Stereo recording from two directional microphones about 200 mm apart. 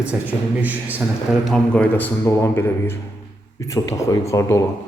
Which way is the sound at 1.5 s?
5° left (ahead or behind).